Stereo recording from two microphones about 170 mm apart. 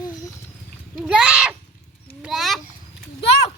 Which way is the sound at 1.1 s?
5° right (ahead or behind).